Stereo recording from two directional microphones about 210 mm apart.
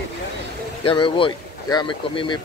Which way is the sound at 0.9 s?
25° left (ahead or behind).